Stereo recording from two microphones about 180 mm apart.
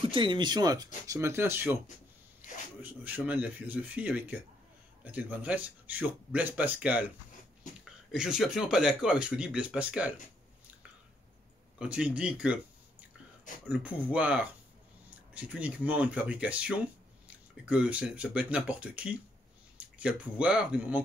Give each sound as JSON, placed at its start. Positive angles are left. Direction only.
{"t": 0.0, "sound": "speech", "side_deg": -30}
{"t": 2.8, "sound": "speech", "side_deg": -10}
{"t": 8.1, "sound": "speech", "side_deg": -5}
{"t": 11.8, "sound": "speech", "side_deg": -5}
{"t": 13.7, "sound": "speech", "side_deg": -10}